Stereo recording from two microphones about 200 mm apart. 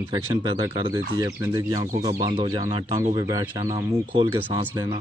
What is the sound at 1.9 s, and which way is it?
Speech, 40° right (ahead or behind).